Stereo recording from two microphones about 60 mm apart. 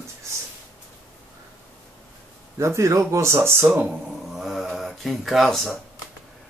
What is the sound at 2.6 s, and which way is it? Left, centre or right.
Speech, right.